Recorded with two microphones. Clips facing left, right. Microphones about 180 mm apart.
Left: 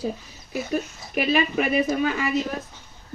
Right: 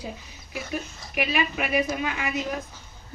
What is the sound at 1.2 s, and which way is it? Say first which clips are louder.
A woman's voice: left 5 dB; 40° left (ahead or behind).